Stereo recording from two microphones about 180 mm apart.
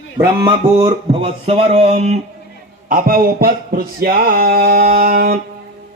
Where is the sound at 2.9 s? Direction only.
50° right (ahead or behind).